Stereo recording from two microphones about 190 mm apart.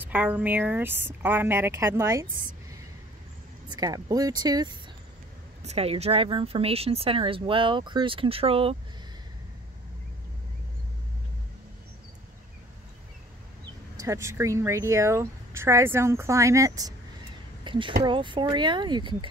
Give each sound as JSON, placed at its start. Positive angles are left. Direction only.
{"t": 0.0, "sound": "speech", "side_deg": -10}
{"t": 3.6, "sound": "speech", "side_deg": -20}
{"t": 5.7, "sound": "speech", "side_deg": -30}
{"t": 13.9, "sound": "speech", "side_deg": -15}